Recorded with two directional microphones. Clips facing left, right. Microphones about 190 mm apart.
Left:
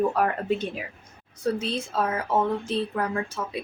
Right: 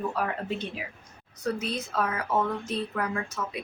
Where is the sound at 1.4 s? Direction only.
30° left (ahead or behind).